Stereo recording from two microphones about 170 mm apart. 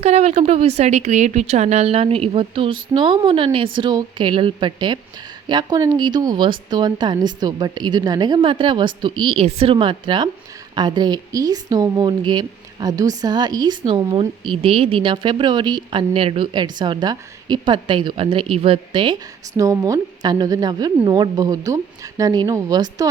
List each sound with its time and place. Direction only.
0.0 s a woman's voice: 40° right (ahead or behind)
19.5 s a woman's voice: 20° right (ahead or behind)